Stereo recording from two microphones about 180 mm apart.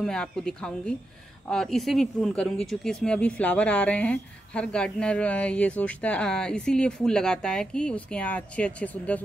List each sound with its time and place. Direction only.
0.0 s speech: 5° left (ahead or behind)